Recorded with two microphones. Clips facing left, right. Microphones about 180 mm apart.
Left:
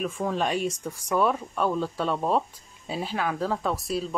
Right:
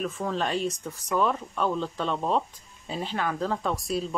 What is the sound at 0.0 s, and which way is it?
Speech, 15° left (ahead or behind).